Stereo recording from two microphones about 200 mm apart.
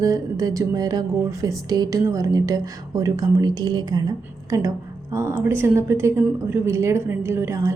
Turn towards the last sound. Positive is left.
turn(degrees=-15)  # may be behind; listen again after turning